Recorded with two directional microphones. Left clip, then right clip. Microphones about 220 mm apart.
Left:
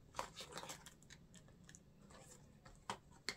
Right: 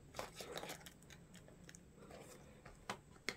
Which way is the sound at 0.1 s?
15° right (ahead or behind).